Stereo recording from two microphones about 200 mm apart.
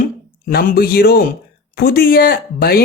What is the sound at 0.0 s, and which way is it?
Speech, 45° left (ahead or behind).